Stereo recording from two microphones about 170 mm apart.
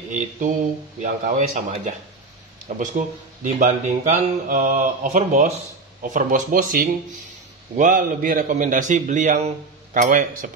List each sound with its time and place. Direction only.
0.1 s mantra: 50° right (ahead or behind)